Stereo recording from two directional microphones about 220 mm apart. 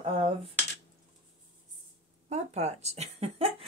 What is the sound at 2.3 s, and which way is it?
Speech, 30° right (ahead or behind).